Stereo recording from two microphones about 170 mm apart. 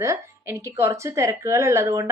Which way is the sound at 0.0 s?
15° right (ahead or behind).